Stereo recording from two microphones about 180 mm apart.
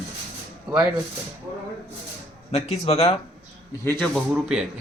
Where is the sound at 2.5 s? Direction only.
35° left (ahead or behind).